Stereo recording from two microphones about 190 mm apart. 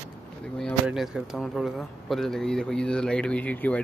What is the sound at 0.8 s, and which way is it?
Speech, 5° right (ahead or behind).